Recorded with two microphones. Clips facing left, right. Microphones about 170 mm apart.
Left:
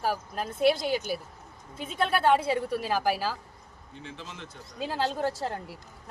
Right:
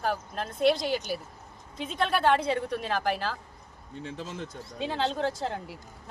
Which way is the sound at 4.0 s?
40° right (ahead or behind).